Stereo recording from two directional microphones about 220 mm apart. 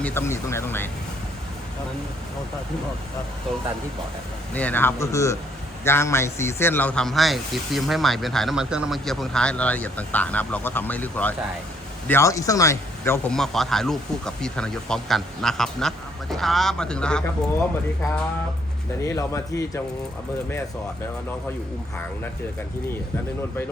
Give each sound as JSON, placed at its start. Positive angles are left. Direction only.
{"t": 0.0, "sound": "speech", "side_deg": 10}
{"t": 4.5, "sound": "a man's voice", "side_deg": 10}
{"t": 19.0, "sound": "speech", "side_deg": 15}